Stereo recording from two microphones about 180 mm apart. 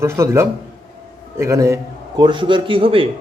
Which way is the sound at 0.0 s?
15° right (ahead or behind).